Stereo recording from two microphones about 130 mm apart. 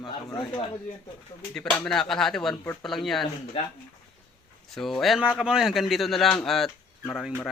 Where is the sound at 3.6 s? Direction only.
45° left (ahead or behind).